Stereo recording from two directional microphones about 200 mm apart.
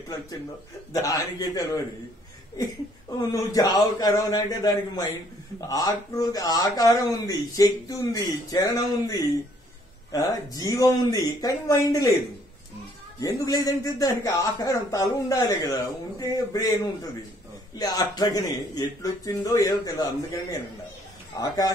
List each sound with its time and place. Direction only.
1.0 s speech: 20° left (ahead or behind)
3.2 s speech: 20° left (ahead or behind)
13.2 s speech: 20° left (ahead or behind)
21.4 s speech: 20° left (ahead or behind)